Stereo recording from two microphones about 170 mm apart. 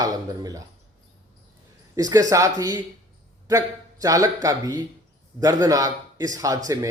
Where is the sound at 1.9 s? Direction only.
20° right (ahead or behind).